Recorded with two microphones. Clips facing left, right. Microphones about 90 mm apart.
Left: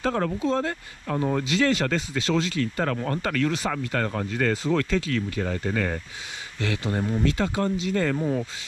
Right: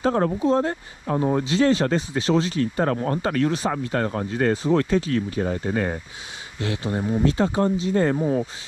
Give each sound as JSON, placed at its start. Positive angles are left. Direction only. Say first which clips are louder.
{"t": 0.0, "sound": "speech", "louder": "right 4 dB", "side_deg": -35}